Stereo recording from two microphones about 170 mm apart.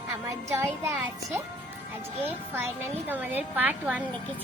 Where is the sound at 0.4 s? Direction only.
15° right (ahead or behind).